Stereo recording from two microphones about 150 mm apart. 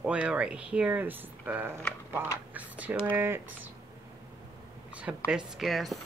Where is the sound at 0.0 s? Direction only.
10° right (ahead or behind).